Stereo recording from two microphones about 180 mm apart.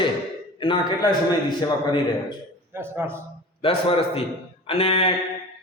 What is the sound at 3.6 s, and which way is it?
Mantra, 30° left (ahead or behind).